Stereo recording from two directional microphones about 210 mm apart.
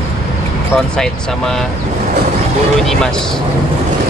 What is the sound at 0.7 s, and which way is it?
Speech, 5° left (ahead or behind).